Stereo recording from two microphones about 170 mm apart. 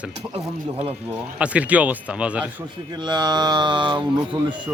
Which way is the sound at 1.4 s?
10° right (ahead or behind).